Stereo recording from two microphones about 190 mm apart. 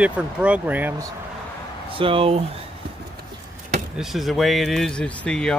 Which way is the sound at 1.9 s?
30° right (ahead or behind).